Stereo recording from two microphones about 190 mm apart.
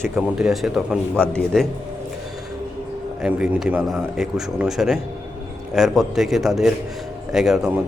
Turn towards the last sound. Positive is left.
turn(degrees=0)  # may be behind; listen again after turning